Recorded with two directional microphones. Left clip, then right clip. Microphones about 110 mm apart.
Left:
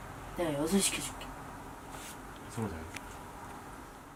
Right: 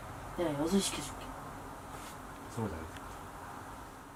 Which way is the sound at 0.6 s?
Centre (ahead or behind).